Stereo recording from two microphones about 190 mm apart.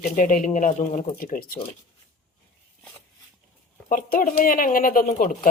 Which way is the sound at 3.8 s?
45° left (ahead or behind).